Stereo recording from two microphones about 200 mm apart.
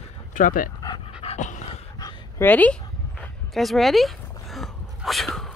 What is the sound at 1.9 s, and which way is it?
Dog, 15° left (ahead or behind).